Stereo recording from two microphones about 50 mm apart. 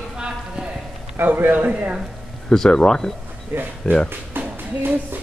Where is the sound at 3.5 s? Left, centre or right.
Right.